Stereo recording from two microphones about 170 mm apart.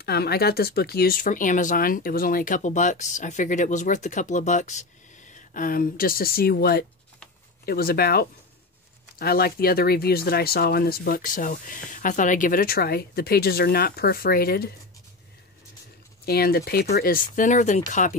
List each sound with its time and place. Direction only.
0.0 s speech: 70° left (ahead or behind)
16.3 s speech: 65° left (ahead or behind); by 18.1 s 45° left (ahead or behind)